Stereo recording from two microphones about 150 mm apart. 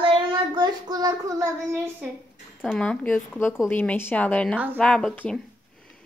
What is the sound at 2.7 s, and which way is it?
A woman's voice, 10° left (ahead or behind).